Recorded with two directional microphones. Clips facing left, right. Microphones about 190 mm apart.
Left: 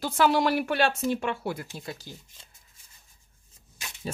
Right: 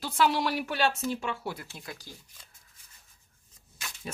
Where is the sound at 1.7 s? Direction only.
25° left (ahead or behind).